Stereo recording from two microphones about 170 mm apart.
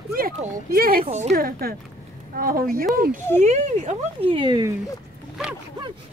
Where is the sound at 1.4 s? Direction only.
60° right (ahead or behind).